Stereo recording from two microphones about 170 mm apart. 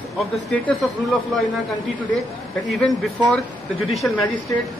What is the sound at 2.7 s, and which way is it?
Speech, centre (ahead or behind).